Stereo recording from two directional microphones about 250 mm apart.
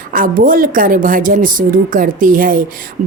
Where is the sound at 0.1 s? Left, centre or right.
Right.